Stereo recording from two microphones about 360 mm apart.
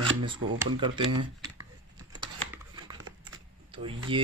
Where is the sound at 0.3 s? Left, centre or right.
Centre.